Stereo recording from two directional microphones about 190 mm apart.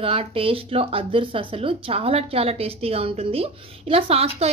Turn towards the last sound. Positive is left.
turn(degrees=-30)  # may be behind; listen again after turning